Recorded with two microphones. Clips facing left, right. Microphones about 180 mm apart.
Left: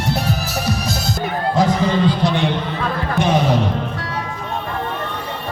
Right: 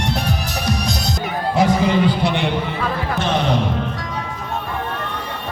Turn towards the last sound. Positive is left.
turn(degrees=10)  # may be behind; listen again after turning